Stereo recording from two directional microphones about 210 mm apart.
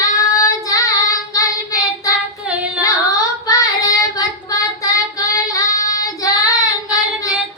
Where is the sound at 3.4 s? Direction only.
15° left (ahead or behind).